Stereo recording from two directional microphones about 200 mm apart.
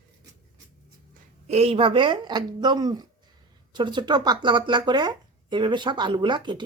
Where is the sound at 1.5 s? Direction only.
30° right (ahead or behind).